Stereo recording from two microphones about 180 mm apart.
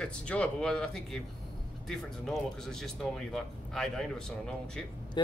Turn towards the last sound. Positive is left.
turn(degrees=5)  # may be behind; listen again after turning